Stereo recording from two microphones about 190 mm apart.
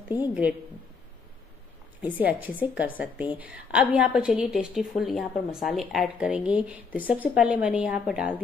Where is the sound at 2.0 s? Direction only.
10° right (ahead or behind).